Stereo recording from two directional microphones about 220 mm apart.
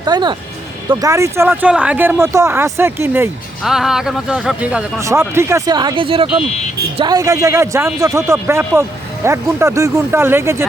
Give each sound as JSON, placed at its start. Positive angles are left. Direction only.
{"t": 0.0, "sound": "music", "side_deg": -20}
{"t": 0.9, "sound": "speech", "side_deg": -15}